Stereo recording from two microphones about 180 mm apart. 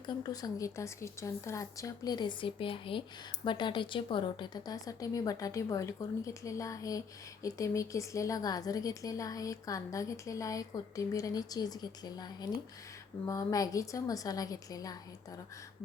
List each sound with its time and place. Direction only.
0.2 s a woman's voice: 20° left (ahead or behind)